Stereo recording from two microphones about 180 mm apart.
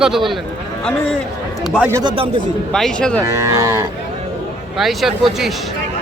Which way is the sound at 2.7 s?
5° left (ahead or behind).